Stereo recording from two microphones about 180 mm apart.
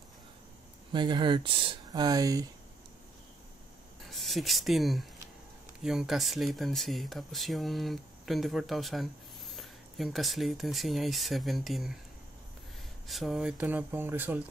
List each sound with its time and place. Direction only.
0.9 s speech: 25° right (ahead or behind)
4.0 s speech: centre (ahead or behind)
13.0 s speech: centre (ahead or behind)